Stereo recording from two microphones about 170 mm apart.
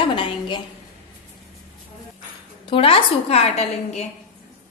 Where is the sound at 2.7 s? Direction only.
35° left (ahead or behind).